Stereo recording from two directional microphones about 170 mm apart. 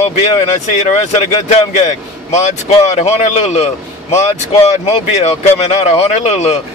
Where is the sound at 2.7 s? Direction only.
40° left (ahead or behind).